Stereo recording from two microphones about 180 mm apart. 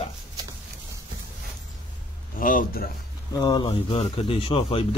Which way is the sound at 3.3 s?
25° left (ahead or behind).